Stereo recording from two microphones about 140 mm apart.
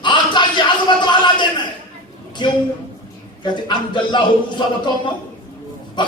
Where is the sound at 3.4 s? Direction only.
35° left (ahead or behind).